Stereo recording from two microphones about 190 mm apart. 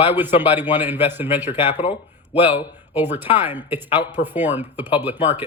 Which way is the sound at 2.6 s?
10° right (ahead or behind).